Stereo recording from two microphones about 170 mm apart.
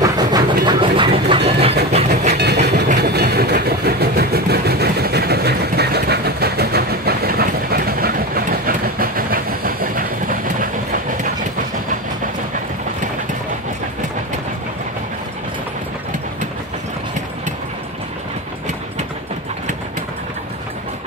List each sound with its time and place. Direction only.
0.0 s a sound: 25° right (ahead or behind)
0.7 s train: 30° right (ahead or behind)
2.3 s train: 75° right (ahead or behind)
3.0 s vehicle: 70° right (ahead or behind)